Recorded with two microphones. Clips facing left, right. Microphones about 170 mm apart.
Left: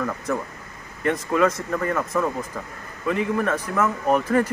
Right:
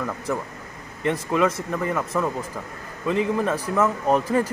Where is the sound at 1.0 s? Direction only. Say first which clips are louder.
Left 1 dB; 15° right (ahead or behind).